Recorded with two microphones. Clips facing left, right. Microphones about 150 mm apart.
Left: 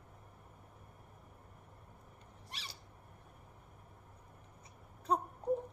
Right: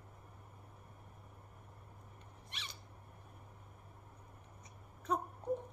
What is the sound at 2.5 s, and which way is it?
Owl, 35° left (ahead or behind).